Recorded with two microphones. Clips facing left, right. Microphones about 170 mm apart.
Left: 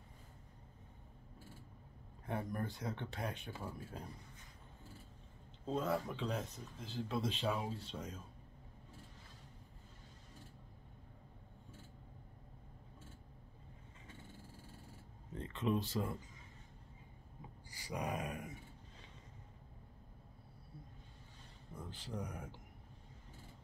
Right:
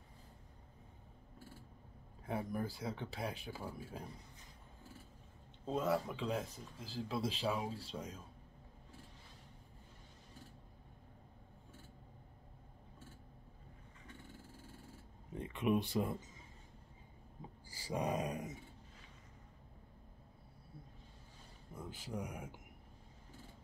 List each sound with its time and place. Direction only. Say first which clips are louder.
2.2 s speech: right 1 dB; 5° right (ahead or behind)
5.7 s speech: right 1 dB; 5° right (ahead or behind)
15.3 s speech: right 2 dB; 15° right (ahead or behind)
17.6 s a sound: right 3 dB; 30° right (ahead or behind)
21.7 s speech: right 1 dB; 10° right (ahead or behind)